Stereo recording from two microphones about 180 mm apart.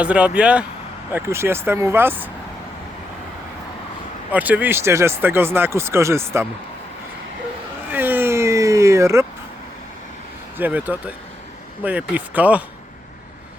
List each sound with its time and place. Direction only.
0.0 s speech: 5° right (ahead or behind)
4.3 s speech: 10° right (ahead or behind)
7.9 s vehicle: 10° right (ahead or behind)
10.6 s speech: 10° right (ahead or behind)